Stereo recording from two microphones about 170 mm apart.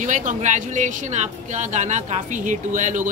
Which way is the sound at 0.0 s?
45° right (ahead or behind).